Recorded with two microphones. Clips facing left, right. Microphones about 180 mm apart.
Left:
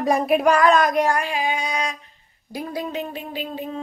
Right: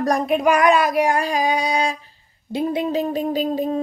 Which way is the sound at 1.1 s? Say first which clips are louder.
Right 4 dB; 40° right (ahead or behind).